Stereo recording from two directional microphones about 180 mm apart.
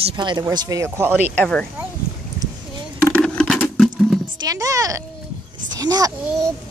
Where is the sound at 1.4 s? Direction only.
5° left (ahead or behind).